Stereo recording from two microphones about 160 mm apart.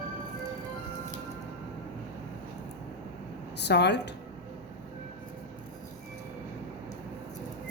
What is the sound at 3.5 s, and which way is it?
Speech, 90° left.